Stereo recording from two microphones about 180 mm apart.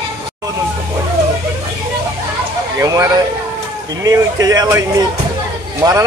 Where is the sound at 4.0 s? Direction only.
20° right (ahead or behind).